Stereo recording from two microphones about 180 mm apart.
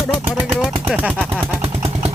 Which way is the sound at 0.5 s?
5° right (ahead or behind).